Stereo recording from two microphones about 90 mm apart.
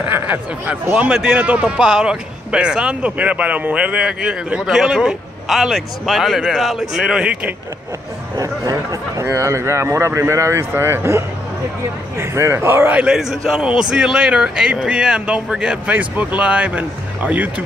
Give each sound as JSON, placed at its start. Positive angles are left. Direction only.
{"t": 0.1, "sound": "a man's voice", "side_deg": -20}
{"t": 8.4, "sound": "speech", "side_deg": -40}
{"t": 12.9, "sound": "a man's voice", "side_deg": -10}